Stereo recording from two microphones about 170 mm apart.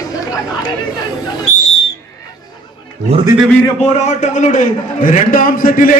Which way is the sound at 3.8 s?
40° left (ahead or behind).